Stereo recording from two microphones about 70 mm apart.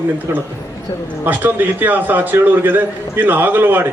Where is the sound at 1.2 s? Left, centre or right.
Right.